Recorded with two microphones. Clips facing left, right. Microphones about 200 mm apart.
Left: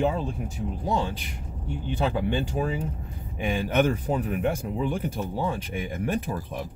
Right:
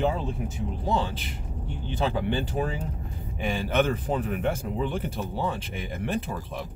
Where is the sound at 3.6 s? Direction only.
15° left (ahead or behind).